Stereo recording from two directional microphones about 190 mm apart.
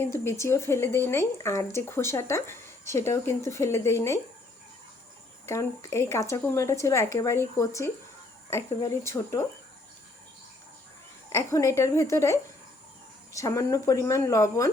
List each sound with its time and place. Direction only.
0.0 s speech: 15° left (ahead or behind)
5.5 s speech: 15° left (ahead or behind)
11.3 s speech: 15° left (ahead or behind)